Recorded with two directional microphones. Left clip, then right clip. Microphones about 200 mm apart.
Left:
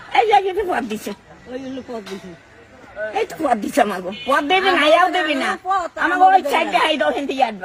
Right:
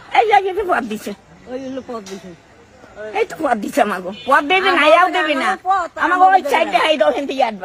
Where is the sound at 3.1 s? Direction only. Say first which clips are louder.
Right 2 dB; centre (ahead or behind).